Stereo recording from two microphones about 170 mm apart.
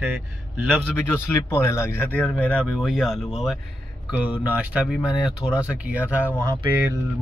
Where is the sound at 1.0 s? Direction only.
15° left (ahead or behind); by 6.3 s 10° right (ahead or behind).